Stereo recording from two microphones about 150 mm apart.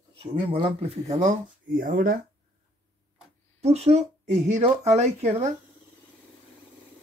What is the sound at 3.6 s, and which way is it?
Speech, 45° right (ahead or behind).